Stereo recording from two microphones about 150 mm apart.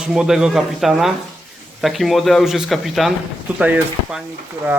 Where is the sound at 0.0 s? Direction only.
5° right (ahead or behind).